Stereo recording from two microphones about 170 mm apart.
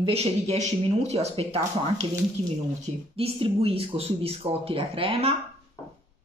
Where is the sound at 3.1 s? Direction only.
35° right (ahead or behind).